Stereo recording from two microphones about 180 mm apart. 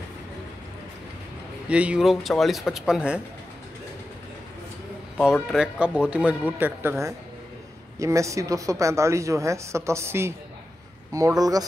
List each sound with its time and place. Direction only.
1.7 s speech: 5° right (ahead or behind)
5.1 s speech: centre (ahead or behind); by 11.6 s 20° right (ahead or behind)